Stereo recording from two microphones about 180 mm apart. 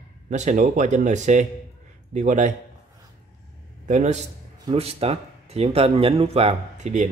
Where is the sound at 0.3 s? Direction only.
40° right (ahead or behind).